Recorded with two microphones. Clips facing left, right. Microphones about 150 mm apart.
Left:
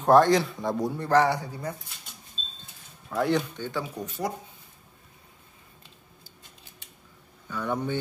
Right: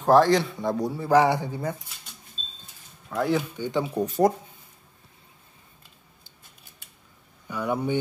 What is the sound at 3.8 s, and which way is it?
Speech, 30° right (ahead or behind).